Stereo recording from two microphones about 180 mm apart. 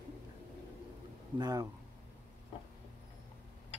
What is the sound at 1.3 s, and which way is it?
Speech, 20° right (ahead or behind).